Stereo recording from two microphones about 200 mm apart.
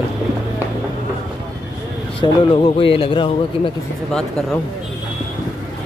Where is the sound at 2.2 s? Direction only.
25° left (ahead or behind).